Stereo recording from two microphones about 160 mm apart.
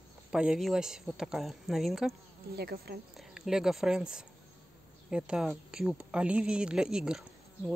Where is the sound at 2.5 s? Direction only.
80° right.